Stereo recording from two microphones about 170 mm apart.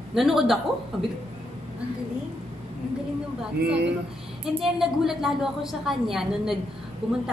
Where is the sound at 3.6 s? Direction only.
90° right.